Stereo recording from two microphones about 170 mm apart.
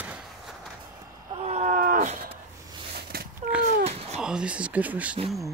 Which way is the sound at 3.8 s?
40° right (ahead or behind).